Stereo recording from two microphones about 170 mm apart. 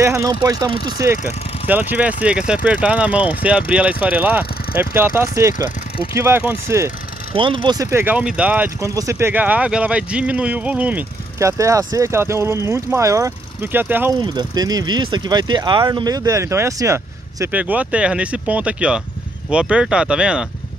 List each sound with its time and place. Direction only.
0.0 s speech: 15° right (ahead or behind)
7.3 s speech: 30° right (ahead or behind); by 14.1 s 10° right (ahead or behind)
14.2 s speech: 25° right (ahead or behind); by 20.4 s 5° right (ahead or behind)